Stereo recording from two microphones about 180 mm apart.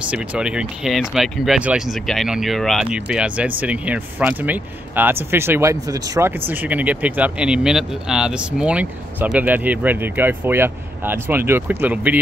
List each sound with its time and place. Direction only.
0.1 s speech: 5° right (ahead or behind)